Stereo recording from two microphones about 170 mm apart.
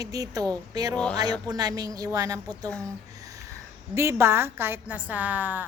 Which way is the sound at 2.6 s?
5° left (ahead or behind).